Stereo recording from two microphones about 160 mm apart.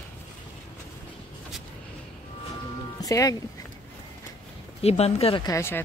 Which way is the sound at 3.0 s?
20° left (ahead or behind).